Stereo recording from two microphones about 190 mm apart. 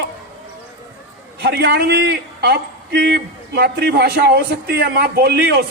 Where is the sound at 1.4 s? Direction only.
60° right (ahead or behind).